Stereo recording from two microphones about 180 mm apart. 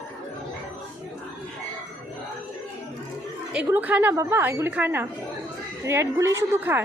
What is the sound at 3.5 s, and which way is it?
A woman's voice, 10° right (ahead or behind).